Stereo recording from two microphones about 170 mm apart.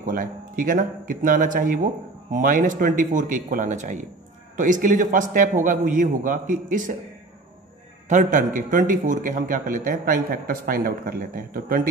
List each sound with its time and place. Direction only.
0.0 s a man's voice: 55° right (ahead or behind)
8.1 s a man's voice: 50° right (ahead or behind)